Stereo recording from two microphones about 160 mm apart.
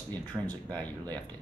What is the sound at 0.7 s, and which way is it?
Speech, 10° left (ahead or behind).